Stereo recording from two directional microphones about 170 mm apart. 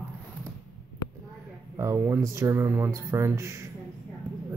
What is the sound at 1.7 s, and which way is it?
Speech, 15° right (ahead or behind).